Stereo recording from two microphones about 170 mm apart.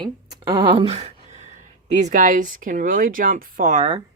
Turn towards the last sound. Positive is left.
turn(degrees=-40)  # may be behind; listen again after turning